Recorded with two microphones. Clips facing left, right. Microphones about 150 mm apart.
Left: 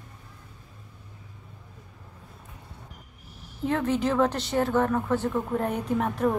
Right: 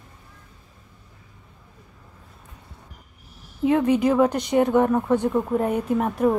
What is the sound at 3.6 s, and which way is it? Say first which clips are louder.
A woman's voice: right 6 dB; 10° right (ahead or behind).